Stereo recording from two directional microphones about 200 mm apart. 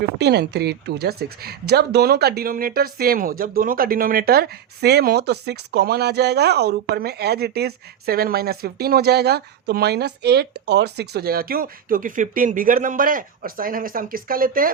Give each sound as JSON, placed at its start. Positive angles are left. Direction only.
{"t": 0.2, "sound": "speech", "side_deg": -55}